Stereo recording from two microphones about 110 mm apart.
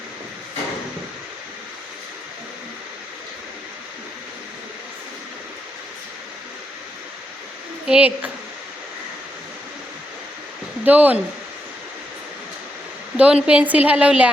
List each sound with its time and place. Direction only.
7.9 s a woman's voice: 10° right (ahead or behind)
10.8 s a woman's voice: 15° right (ahead or behind)
13.1 s a woman's voice: 10° right (ahead or behind)